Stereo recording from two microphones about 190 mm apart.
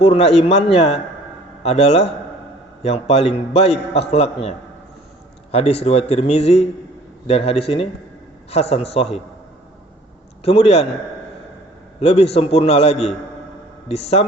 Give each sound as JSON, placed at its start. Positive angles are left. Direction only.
{"t": 0.0, "sound": "a man's voice", "side_deg": 35}
{"t": 10.4, "sound": "a man's voice", "side_deg": 30}
{"t": 11.9, "sound": "a man's voice", "side_deg": 30}